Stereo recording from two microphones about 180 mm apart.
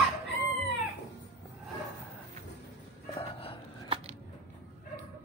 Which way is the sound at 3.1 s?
30° left (ahead or behind).